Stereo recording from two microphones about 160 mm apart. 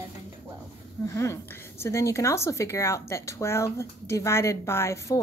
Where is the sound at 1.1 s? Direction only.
20° left (ahead or behind).